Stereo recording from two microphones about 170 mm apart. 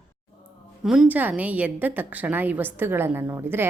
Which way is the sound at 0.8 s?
5° right (ahead or behind).